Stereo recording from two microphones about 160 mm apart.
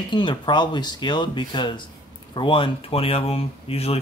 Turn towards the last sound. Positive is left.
turn(degrees=40)  # may be behind; listen again after turning